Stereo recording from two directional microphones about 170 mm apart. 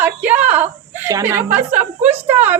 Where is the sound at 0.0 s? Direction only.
10° right (ahead or behind).